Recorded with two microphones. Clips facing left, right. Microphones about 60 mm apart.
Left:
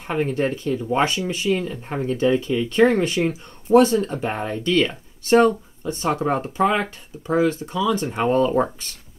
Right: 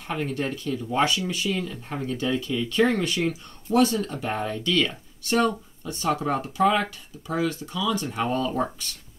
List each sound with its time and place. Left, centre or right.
0.1 s speech: left